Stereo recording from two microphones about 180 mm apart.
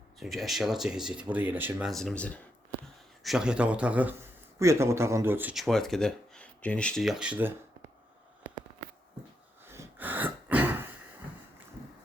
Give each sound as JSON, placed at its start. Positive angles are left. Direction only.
{"t": 0.2, "sound": "speech", "side_deg": 0}
{"t": 1.9, "sound": "speech", "side_deg": 0}
{"t": 3.2, "sound": "speech", "side_deg": -5}
{"t": 9.6, "sound": "a sound", "side_deg": -10}